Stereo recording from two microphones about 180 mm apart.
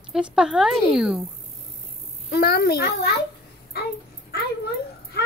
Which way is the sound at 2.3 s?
60° left (ahead or behind).